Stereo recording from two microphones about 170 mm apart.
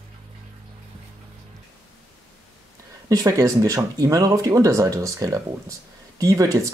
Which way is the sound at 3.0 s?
20° right (ahead or behind).